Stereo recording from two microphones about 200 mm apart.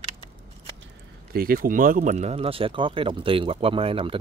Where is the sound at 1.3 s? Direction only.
45° right (ahead or behind).